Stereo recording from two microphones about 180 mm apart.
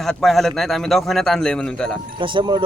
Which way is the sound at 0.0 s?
Centre (ahead or behind).